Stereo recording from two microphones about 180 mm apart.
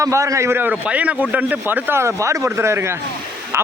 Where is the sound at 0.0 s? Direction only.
15° right (ahead or behind).